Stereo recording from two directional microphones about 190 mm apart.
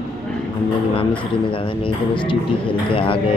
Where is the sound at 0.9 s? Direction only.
25° left (ahead or behind).